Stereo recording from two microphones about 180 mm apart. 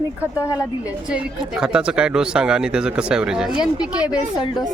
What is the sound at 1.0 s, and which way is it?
A woman's voice, 5° right (ahead or behind).